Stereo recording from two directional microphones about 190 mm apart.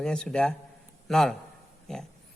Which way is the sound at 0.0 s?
5° left (ahead or behind).